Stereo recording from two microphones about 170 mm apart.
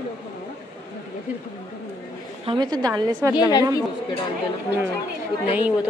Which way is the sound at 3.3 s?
25° left (ahead or behind).